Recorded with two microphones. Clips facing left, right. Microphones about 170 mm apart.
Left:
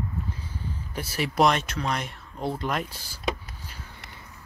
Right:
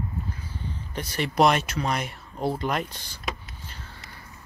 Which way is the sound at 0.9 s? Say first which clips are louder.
Right 1 dB; 5° left (ahead or behind).